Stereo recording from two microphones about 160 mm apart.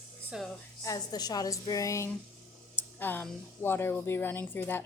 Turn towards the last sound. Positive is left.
turn(degrees=10)  # may be behind; listen again after turning